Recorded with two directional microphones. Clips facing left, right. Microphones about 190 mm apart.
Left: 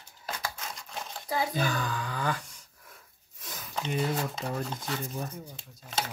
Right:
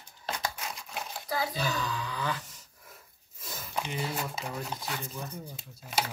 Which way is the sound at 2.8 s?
5° right (ahead or behind).